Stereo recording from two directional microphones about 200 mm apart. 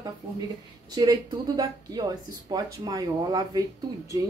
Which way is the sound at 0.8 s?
20° right (ahead or behind).